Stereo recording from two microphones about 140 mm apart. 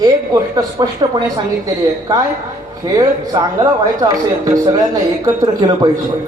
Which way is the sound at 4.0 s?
25° right (ahead or behind).